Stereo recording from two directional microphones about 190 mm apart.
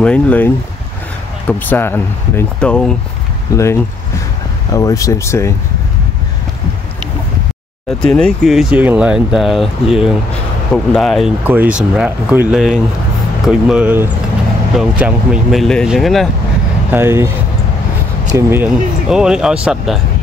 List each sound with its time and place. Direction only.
0.0 s speech: 5° left (ahead or behind)
1.5 s speech: 10° left (ahead or behind)
8.0 s speech: 5° left (ahead or behind)
16.9 s speech: 10° right (ahead or behind)
18.3 s speech: 10° right (ahead or behind)